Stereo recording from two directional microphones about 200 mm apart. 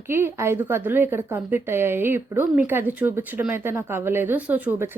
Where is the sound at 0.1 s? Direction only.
10° right (ahead or behind).